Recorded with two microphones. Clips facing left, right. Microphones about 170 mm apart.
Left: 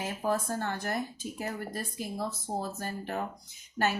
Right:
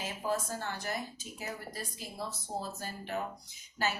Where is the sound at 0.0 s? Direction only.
55° left (ahead or behind).